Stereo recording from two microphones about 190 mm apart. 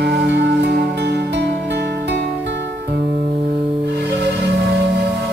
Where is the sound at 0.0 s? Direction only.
60° right (ahead or behind).